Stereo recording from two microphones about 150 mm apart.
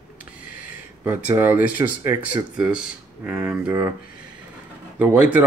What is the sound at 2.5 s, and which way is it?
Speech, 5° right (ahead or behind).